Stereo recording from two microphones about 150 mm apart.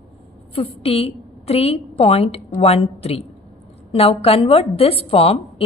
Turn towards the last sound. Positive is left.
turn(degrees=40)  # may be behind; listen again after turning